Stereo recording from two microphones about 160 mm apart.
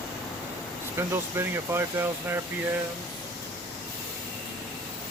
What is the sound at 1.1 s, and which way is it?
Speech, 15° right (ahead or behind).